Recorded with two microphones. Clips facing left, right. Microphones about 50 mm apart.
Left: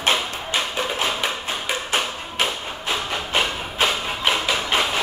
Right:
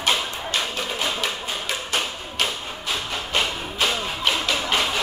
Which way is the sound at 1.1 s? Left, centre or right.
Centre.